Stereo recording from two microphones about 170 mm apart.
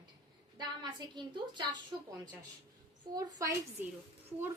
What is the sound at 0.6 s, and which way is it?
A woman's voice, 25° right (ahead or behind).